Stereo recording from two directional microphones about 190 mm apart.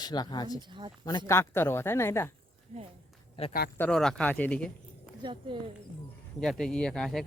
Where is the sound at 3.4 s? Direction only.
30° left (ahead or behind).